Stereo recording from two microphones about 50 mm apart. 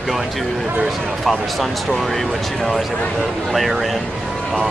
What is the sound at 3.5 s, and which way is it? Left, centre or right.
Speech, centre.